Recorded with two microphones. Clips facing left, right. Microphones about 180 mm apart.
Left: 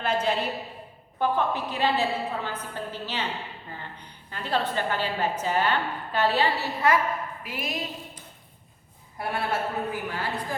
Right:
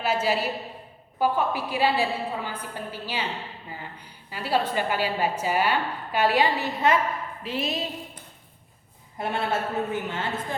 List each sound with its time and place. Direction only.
0.0 s a woman's voice: 5° right (ahead or behind)
7.4 s a woman's voice: 25° right (ahead or behind)
9.1 s a woman's voice: 25° right (ahead or behind)